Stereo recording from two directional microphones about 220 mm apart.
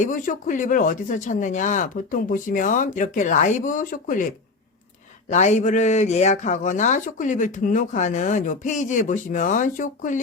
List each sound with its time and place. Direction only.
0.0 s a man's voice: 35° left (ahead or behind)